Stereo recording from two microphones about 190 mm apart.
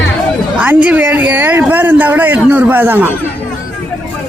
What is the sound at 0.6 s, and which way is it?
Speech, 5° right (ahead or behind).